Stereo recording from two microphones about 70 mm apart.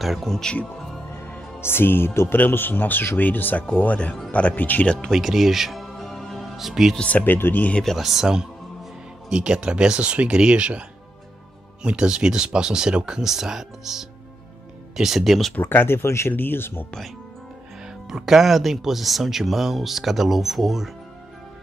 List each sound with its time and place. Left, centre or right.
0.0 s speech: centre
0.4 s speech: centre
1.6 s speech: left
5.1 s music: centre
7.0 s speech: centre
7.8 s speech: centre
15.5 s speech: left
17.8 s speech: centre